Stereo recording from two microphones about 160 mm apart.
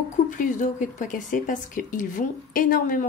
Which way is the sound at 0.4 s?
55° left (ahead or behind).